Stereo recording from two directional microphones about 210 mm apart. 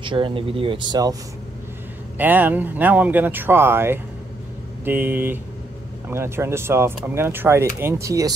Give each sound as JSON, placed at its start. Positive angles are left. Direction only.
{"t": 0.0, "sound": "speech", "side_deg": -25}
{"t": 2.1, "sound": "speech", "side_deg": -10}